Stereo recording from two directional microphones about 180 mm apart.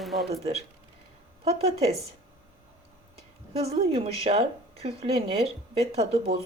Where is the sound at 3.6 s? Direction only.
35° right (ahead or behind).